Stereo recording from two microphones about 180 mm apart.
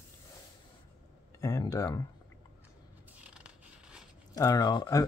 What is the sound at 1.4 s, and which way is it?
Speech, 20° left (ahead or behind).